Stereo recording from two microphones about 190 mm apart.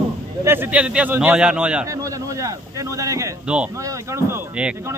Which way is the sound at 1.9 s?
15° right (ahead or behind).